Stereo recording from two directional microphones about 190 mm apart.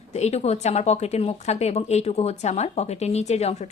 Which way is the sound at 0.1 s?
35° left (ahead or behind).